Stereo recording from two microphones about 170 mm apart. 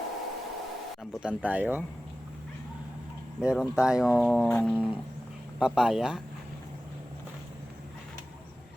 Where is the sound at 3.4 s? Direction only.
5° right (ahead or behind).